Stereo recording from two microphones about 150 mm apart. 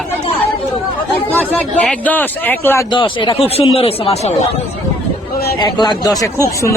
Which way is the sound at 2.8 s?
30° left (ahead or behind).